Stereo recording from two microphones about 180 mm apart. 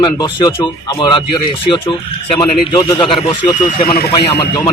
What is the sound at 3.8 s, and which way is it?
Speech, 55° left (ahead or behind).